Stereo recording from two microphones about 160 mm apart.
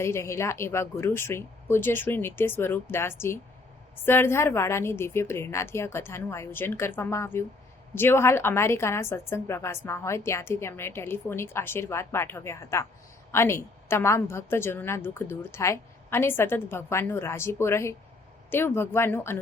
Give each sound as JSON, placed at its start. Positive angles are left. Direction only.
{"t": 0.0, "sound": "a woman's voice", "side_deg": 15}